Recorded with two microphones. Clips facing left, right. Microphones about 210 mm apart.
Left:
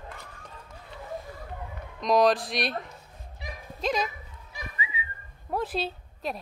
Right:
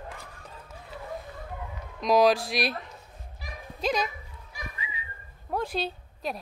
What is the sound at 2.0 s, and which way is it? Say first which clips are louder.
Speech: right 1 dB; 5° right (ahead or behind).